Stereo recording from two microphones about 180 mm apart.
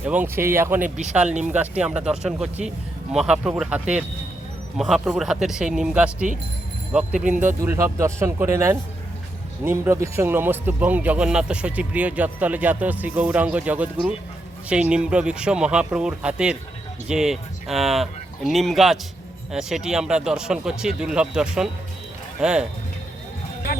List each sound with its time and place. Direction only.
0.0 s speech: 10° right (ahead or behind)
7.3 s speech: 15° right (ahead or behind)